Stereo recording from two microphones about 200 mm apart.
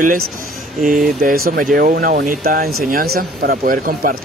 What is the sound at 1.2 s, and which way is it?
Speech, 45° right (ahead or behind).